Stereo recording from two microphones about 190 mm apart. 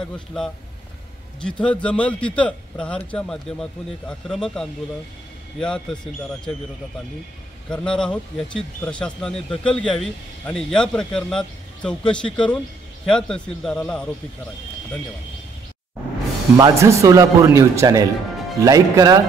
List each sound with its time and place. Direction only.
0.0 s speech: 5° left (ahead or behind)
7.7 s speech: 5° left (ahead or behind)
16.5 s speech: 20° right (ahead or behind)